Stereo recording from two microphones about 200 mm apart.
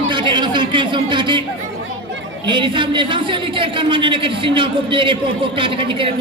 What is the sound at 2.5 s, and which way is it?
A man's voice, 25° right (ahead or behind).